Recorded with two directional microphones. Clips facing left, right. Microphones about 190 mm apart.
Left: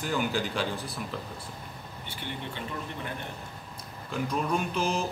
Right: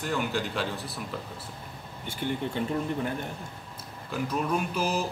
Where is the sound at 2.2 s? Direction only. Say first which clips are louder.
Right 9 dB; 45° right (ahead or behind).